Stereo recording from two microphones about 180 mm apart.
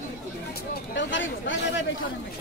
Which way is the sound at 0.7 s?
80° left.